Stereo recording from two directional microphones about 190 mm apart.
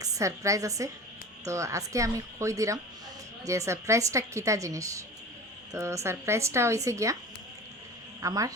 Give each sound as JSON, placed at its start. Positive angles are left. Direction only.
{"t": 0.0, "sound": "a woman's voice", "side_deg": -15}
{"t": 8.2, "sound": "a woman's voice", "side_deg": -20}